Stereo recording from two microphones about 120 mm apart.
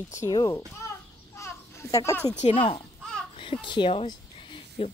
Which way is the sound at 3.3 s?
45° left (ahead or behind).